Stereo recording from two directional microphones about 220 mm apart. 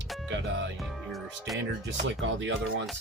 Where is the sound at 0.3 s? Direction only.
55° right (ahead or behind).